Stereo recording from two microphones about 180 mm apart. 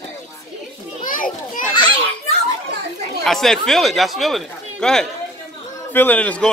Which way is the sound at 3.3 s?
Centre (ahead or behind).